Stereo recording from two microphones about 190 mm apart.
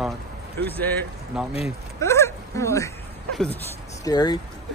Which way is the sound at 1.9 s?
15° left (ahead or behind).